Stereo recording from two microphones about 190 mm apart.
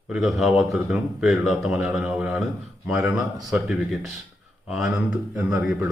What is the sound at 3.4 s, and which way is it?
Speech, centre (ahead or behind).